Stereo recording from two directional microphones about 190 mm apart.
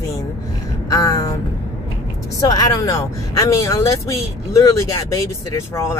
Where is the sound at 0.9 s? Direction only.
15° left (ahead or behind).